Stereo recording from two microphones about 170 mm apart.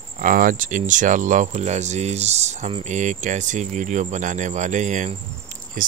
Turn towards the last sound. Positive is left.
turn(degrees=-50)  # may be behind; listen again after turning